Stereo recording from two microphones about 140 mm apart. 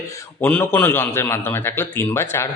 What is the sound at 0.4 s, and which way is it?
A man's voice, 15° left (ahead or behind).